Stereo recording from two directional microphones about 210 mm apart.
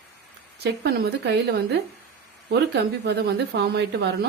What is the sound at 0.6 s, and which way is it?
A woman's voice, 55° right (ahead or behind).